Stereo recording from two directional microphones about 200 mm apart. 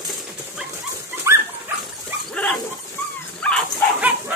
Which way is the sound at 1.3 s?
15° right (ahead or behind).